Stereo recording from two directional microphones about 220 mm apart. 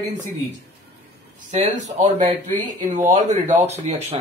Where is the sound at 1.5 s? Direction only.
30° right (ahead or behind).